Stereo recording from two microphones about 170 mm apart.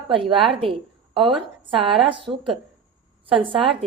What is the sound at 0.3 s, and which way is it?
Speech, centre (ahead or behind).